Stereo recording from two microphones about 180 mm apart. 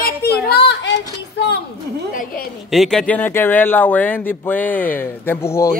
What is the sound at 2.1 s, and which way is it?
Speech, 55° left (ahead or behind).